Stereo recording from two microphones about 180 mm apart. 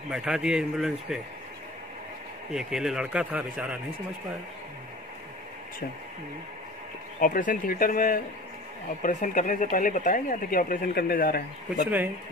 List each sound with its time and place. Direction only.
0.1 s a man's voice: 5° right (ahead or behind)
2.5 s a man's voice: centre (ahead or behind)
7.2 s speech: 50° left (ahead or behind)